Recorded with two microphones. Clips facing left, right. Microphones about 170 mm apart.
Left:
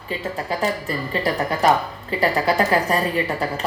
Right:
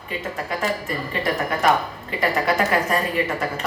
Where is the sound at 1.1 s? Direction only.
30° left (ahead or behind).